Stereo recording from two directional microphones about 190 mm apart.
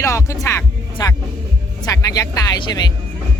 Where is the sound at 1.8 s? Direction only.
20° left (ahead or behind).